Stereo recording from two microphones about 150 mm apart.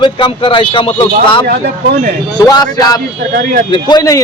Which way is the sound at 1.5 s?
90° right.